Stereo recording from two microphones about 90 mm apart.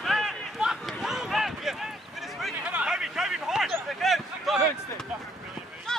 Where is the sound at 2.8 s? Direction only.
5° right (ahead or behind).